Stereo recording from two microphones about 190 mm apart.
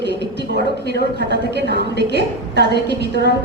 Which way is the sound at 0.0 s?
65° right (ahead or behind).